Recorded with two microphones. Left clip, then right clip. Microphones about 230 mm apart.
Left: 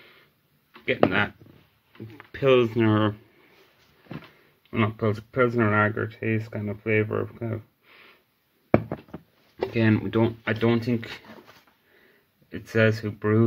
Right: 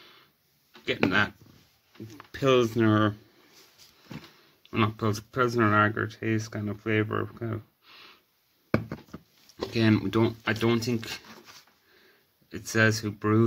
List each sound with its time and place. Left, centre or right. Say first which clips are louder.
0.8 s speech: left 3 dB; right
2.1 s speech: left 3 dB; right
4.6 s speech: left 2 dB; right
9.8 s speech: left 1 dB; right
12.4 s speech: left 2 dB; right